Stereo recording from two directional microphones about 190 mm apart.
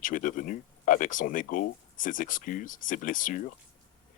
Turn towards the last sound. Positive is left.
turn(degrees=45)  # may be behind; listen again after turning